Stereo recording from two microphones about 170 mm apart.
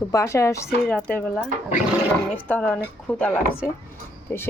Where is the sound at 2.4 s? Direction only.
5° left (ahead or behind).